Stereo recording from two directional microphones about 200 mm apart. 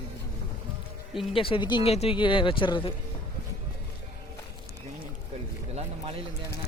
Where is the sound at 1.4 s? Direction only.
25° left (ahead or behind).